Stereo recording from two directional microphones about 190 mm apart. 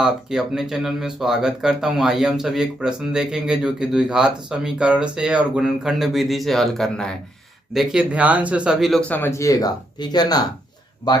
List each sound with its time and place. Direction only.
0.0 s speech: 5° right (ahead or behind); by 11.2 s 20° left (ahead or behind)